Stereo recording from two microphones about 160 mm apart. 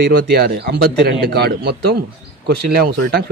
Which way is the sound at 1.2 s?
90° right.